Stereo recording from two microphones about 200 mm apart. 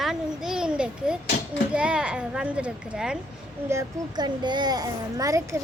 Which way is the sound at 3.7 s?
20° right (ahead or behind).